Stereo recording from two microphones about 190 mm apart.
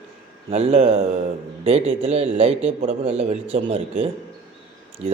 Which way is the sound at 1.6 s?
30° right (ahead or behind).